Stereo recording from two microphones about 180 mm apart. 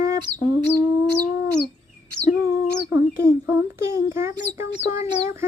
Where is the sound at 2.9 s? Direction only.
15° right (ahead or behind).